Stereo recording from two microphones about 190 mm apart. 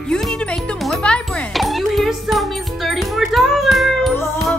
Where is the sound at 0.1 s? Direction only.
5° left (ahead or behind).